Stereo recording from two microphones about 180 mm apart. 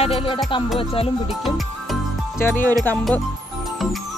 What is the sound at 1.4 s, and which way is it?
Music, centre (ahead or behind).